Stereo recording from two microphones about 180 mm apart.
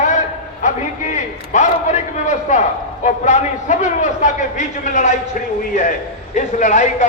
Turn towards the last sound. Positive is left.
turn(degrees=40)  # may be behind; listen again after turning